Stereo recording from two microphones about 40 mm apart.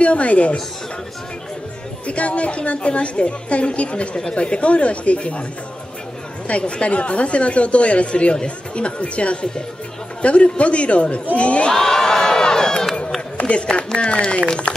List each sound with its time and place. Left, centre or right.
0.0 s a woman's voice: left
2.0 s a woman's voice: left
6.4 s a woman's voice: left
11.7 s crowd: centre
13.4 s a sound: left
13.9 s a woman's voice: left